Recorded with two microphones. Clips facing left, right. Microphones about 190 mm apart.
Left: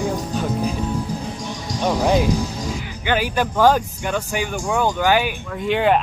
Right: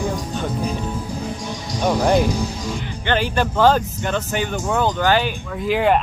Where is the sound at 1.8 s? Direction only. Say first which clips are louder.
Right 1 dB; 5° right (ahead or behind).